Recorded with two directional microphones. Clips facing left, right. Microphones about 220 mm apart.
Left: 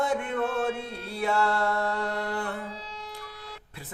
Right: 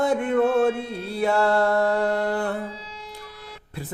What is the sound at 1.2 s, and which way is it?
Music, 35° right (ahead or behind).